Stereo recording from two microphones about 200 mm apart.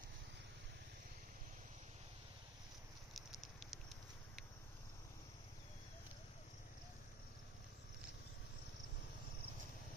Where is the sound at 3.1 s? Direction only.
Centre (ahead or behind).